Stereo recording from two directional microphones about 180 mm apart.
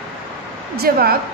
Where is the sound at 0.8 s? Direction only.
60° right (ahead or behind).